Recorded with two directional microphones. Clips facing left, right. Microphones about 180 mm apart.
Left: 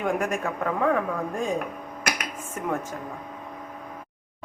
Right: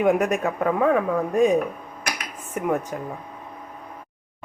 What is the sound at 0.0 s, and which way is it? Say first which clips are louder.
A woman's voice: right 6 dB; 20° right (ahead or behind).